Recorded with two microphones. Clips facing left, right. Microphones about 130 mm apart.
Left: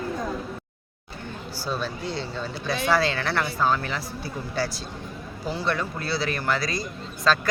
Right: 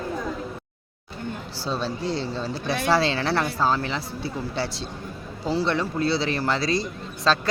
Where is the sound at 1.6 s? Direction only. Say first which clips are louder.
Right 2 dB; 30° right (ahead or behind).